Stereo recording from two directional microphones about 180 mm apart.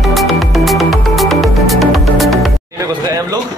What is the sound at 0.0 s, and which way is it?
Music, centre (ahead or behind).